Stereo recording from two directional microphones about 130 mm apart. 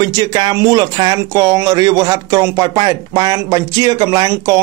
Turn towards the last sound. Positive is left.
turn(degrees=-25)  # may be behind; listen again after turning